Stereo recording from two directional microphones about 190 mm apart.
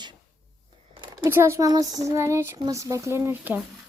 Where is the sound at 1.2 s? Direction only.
10° right (ahead or behind).